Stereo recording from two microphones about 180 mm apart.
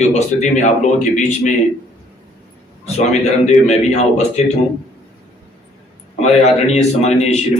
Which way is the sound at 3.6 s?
40° left (ahead or behind).